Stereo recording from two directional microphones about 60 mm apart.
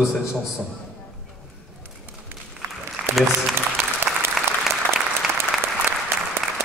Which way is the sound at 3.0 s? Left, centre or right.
Right.